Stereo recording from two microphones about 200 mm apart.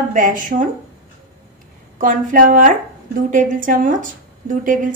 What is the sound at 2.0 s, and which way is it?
A woman's voice, 40° right (ahead or behind).